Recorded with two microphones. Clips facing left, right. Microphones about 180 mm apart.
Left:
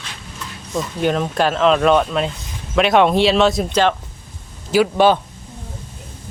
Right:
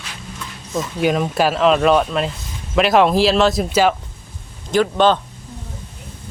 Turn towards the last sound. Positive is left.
turn(degrees=10)  # may be behind; listen again after turning